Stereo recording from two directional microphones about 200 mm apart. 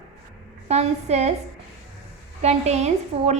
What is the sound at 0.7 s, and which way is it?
Speech, 35° right (ahead or behind).